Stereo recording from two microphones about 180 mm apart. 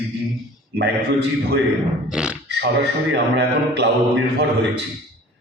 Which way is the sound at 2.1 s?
5° right (ahead or behind).